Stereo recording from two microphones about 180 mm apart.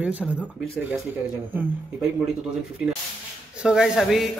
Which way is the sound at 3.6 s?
5° right (ahead or behind).